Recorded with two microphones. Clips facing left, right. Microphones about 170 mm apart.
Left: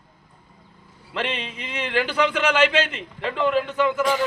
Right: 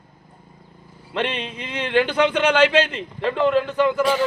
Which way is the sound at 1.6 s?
30° right (ahead or behind).